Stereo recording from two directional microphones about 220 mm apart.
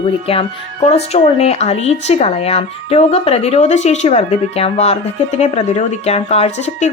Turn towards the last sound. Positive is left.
turn(degrees=30)  # may be behind; listen again after turning